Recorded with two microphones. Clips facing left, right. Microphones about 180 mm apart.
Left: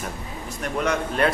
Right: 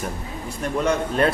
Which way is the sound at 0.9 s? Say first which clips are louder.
Right 2 dB; 35° right (ahead or behind).